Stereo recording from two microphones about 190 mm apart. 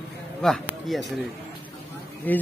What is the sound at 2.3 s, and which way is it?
Speech, 10° left (ahead or behind).